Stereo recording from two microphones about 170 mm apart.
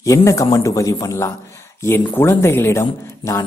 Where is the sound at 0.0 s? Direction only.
20° left (ahead or behind).